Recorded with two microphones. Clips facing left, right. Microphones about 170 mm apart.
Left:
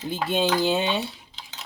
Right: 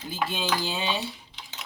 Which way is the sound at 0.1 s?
60° left (ahead or behind).